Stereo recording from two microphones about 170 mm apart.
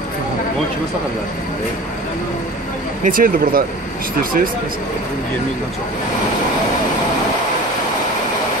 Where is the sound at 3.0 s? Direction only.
55° right (ahead or behind).